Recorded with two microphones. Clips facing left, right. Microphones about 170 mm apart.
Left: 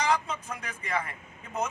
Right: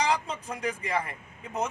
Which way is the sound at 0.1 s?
35° right (ahead or behind).